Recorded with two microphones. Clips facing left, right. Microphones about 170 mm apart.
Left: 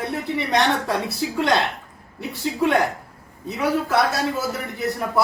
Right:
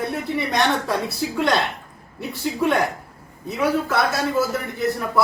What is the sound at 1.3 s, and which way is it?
Speech, 20° left (ahead or behind).